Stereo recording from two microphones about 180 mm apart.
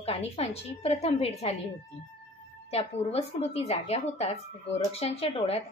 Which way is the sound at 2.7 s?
35° left (ahead or behind).